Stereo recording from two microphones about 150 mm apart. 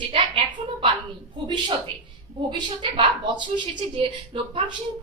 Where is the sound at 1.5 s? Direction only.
30° right (ahead or behind).